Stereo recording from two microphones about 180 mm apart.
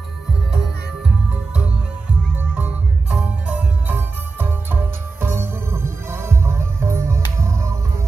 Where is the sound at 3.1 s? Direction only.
5° right (ahead or behind).